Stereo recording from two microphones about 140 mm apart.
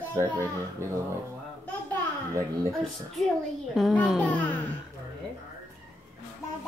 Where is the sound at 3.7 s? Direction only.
Centre (ahead or behind).